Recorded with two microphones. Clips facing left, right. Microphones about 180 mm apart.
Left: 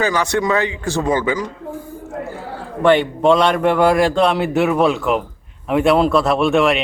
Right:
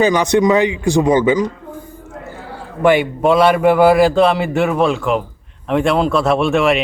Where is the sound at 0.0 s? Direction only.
20° right (ahead or behind).